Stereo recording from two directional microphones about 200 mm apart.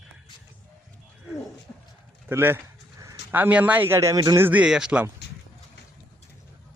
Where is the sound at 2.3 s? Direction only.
10° right (ahead or behind).